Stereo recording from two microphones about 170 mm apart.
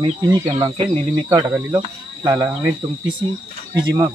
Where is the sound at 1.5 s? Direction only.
15° right (ahead or behind).